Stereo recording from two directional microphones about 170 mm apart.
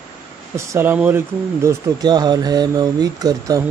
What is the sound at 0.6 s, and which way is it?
Speech, 15° right (ahead or behind).